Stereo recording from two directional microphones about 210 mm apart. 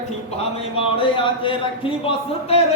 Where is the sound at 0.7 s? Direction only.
25° left (ahead or behind).